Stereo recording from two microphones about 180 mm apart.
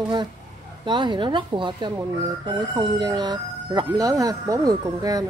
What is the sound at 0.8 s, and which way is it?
Speech, 25° right (ahead or behind).